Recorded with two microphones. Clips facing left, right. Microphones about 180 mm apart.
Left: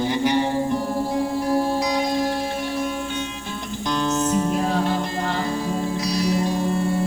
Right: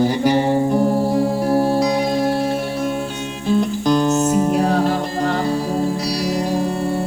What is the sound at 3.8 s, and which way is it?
Music, 40° right (ahead or behind).